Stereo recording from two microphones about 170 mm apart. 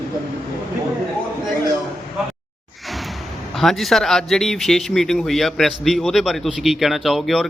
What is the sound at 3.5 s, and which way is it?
Speech, centre (ahead or behind).